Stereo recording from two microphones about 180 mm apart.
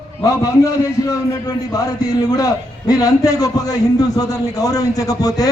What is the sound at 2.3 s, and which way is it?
A man's voice, 20° left (ahead or behind).